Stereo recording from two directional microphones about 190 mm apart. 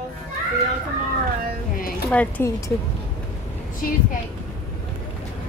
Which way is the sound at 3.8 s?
50° left (ahead or behind).